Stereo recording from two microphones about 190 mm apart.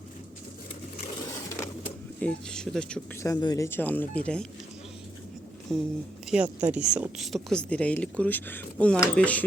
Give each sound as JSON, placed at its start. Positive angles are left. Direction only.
{"t": 1.3, "sound": "a sound", "side_deg": 15}
{"t": 2.2, "sound": "speech", "side_deg": 5}
{"t": 3.2, "sound": "speech", "side_deg": 20}
{"t": 5.7, "sound": "speech", "side_deg": 0}